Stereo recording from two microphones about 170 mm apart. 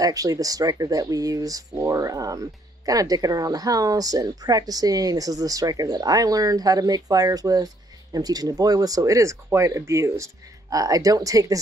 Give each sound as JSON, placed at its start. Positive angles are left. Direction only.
{"t": 0.0, "sound": "speech", "side_deg": -20}